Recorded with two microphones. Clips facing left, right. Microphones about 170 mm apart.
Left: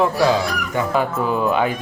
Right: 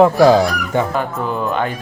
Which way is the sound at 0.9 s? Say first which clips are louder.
Left 1 dB; 5° left (ahead or behind).